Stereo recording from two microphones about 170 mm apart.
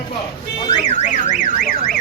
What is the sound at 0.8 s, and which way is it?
Car alarm, 45° left (ahead or behind).